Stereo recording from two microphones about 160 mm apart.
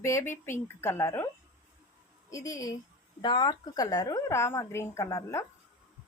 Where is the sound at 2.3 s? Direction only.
20° left (ahead or behind).